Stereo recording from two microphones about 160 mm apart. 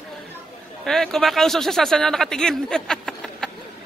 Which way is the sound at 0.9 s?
5° left (ahead or behind).